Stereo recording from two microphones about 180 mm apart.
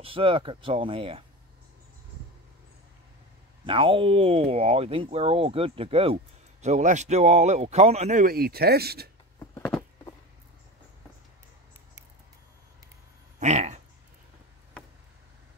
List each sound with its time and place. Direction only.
0.0 s speech: 30° right (ahead or behind)
3.6 s speech: 30° right (ahead or behind); by 9.1 s 60° right (ahead or behind)
13.4 s a sound: 40° right (ahead or behind)